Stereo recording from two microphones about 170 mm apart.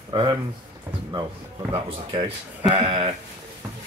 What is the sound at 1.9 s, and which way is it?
Speech, 35° right (ahead or behind).